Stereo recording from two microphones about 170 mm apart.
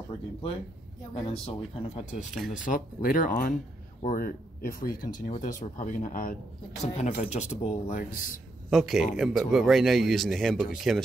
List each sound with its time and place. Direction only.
1.4 s speech: 35° left (ahead or behind)
2.5 s speech: 50° left (ahead or behind)
6.8 s speech: 35° left (ahead or behind); by 8.4 s 55° left (ahead or behind)
8.6 s speech: centre (ahead or behind)